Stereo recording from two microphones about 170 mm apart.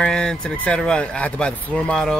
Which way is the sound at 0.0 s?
5° left (ahead or behind).